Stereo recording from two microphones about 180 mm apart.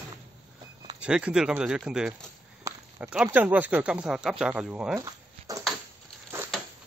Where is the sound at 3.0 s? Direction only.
5° right (ahead or behind).